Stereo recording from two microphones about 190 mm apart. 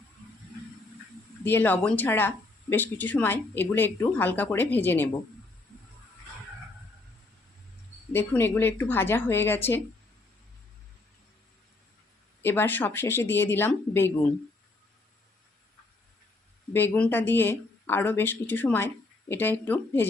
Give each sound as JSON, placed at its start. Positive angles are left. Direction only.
{"t": 1.5, "sound": "speech", "side_deg": 10}
{"t": 8.1, "sound": "speech", "side_deg": 10}
{"t": 12.4, "sound": "speech", "side_deg": 10}
{"t": 16.7, "sound": "speech", "side_deg": 10}